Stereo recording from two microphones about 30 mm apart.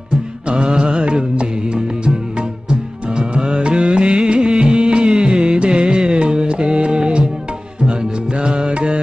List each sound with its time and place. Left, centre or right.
0.5 s music: right